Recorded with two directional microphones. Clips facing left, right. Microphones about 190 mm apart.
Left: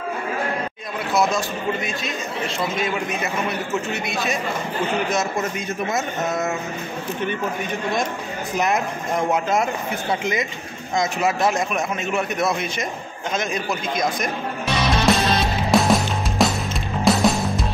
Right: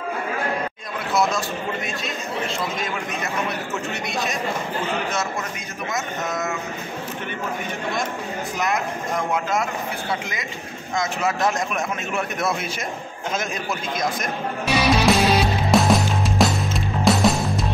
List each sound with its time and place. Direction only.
1.1 s a man's voice: centre (ahead or behind)
8.5 s speech: 20° left (ahead or behind)
11.0 s speech: 15° left (ahead or behind)
11.4 s a man's voice: centre (ahead or behind)
13.9 s music: centre (ahead or behind)